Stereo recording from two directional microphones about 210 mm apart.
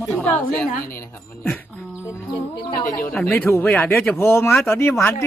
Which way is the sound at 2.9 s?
5° left (ahead or behind).